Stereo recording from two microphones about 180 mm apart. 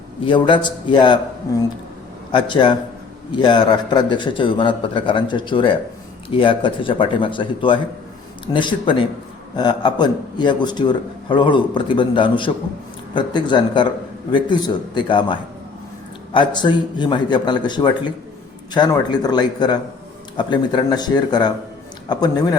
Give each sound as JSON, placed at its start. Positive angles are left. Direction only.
{"t": 0.3, "sound": "a man's voice", "side_deg": 25}